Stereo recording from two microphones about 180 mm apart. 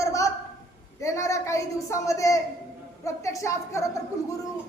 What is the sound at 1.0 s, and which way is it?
A woman's voice, 15° left (ahead or behind).